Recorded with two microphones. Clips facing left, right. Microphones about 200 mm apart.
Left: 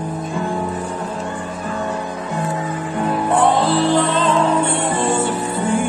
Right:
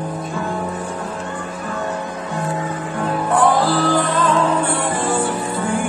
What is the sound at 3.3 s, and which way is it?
Music, 25° left (ahead or behind).